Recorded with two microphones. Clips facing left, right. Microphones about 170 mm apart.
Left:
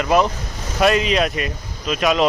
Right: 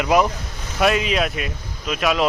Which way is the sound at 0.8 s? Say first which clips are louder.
Left 2 dB; 5° right (ahead or behind).